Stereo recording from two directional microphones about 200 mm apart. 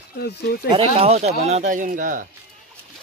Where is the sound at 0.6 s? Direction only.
25° right (ahead or behind).